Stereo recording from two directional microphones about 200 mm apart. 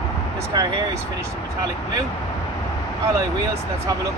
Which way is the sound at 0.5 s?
20° right (ahead or behind).